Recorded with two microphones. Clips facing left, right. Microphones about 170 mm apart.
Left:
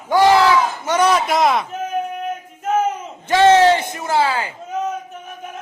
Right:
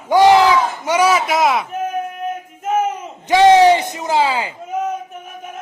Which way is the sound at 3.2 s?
15° right (ahead or behind).